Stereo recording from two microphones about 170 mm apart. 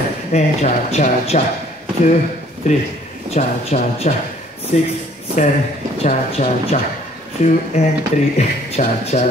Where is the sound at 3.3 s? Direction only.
40° left (ahead or behind).